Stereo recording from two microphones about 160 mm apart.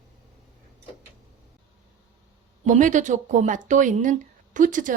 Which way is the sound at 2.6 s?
50° right (ahead or behind).